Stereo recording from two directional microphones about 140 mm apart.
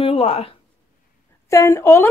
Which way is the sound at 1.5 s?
20° left (ahead or behind).